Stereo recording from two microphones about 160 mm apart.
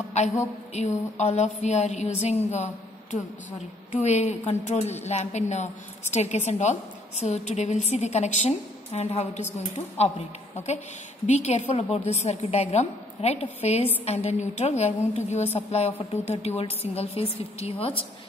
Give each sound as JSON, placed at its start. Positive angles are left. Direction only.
{"t": 0.7, "sound": "a woman's voice", "side_deg": 45}
{"t": 3.9, "sound": "a woman's voice", "side_deg": 45}